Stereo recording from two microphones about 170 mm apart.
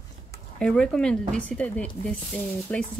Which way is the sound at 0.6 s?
5° left (ahead or behind).